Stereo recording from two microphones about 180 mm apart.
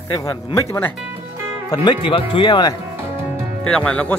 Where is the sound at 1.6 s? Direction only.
25° left (ahead or behind).